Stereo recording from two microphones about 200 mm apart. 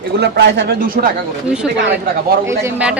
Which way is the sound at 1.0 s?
50° right (ahead or behind).